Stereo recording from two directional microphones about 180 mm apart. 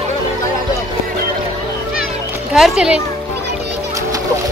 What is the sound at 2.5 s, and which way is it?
Speech, 5° right (ahead or behind).